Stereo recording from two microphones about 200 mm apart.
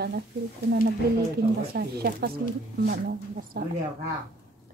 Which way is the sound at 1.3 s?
50° right (ahead or behind).